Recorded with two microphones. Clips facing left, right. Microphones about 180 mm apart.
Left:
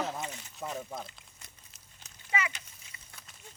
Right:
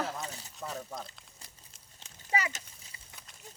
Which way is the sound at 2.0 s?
35° right (ahead or behind).